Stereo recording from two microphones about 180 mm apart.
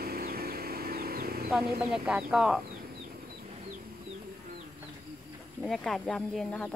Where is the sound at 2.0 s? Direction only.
5° right (ahead or behind).